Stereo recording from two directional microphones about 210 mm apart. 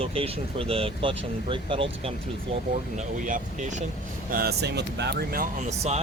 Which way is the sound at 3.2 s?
40° right (ahead or behind).